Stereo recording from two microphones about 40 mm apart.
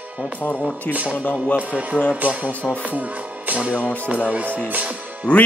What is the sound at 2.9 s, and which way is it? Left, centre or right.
Speech, right.